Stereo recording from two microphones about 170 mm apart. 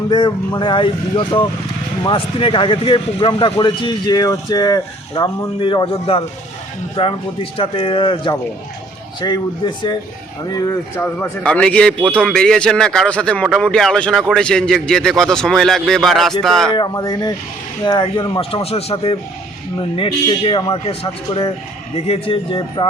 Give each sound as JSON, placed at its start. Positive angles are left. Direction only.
{"t": 0.1, "sound": "speech", "side_deg": 25}
{"t": 10.5, "sound": "speech", "side_deg": 15}
{"t": 16.7, "sound": "speech", "side_deg": 25}